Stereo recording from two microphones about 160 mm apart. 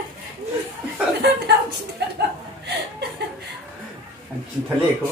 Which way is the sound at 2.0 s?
90° right.